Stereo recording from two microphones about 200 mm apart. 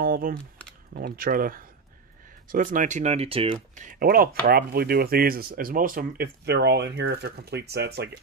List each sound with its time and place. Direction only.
0.0 s a sound: 45° right (ahead or behind)
0.9 s speech: 50° right (ahead or behind); by 3.8 s 30° right (ahead or behind)
3.8 s speech: 45° right (ahead or behind)